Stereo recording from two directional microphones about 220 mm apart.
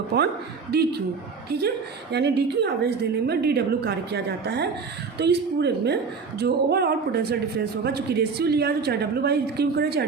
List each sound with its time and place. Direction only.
0.7 s speech: 45° right (ahead or behind)